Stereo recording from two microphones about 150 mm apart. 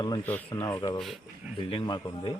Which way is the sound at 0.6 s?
30° left (ahead or behind).